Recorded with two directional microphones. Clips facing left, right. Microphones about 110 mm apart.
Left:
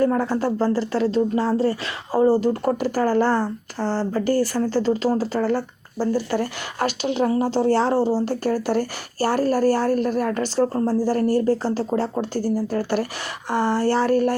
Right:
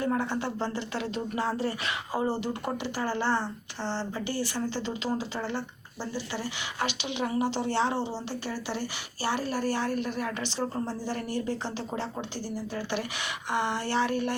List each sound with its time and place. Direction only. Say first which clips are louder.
0.0 s speech: left 9 dB; 45° left (ahead or behind)